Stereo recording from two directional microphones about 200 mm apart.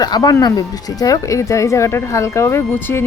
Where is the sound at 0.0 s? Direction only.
20° left (ahead or behind).